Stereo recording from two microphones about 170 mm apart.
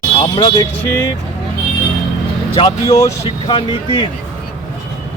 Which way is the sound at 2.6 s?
20° left (ahead or behind).